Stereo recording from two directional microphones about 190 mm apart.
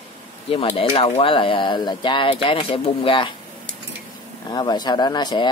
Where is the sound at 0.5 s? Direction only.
30° left (ahead or behind).